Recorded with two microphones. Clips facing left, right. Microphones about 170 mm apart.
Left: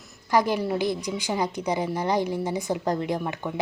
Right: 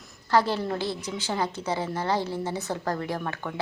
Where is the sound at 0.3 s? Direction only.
15° left (ahead or behind).